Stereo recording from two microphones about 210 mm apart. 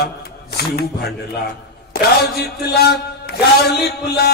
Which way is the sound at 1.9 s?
50° left (ahead or behind).